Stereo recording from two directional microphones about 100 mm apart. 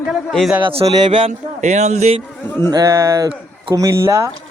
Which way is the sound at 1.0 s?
60° right (ahead or behind).